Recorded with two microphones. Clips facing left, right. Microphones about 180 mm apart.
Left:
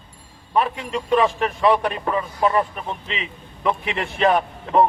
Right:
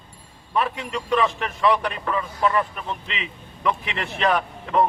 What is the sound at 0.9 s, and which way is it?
A man's voice, 35° left (ahead or behind).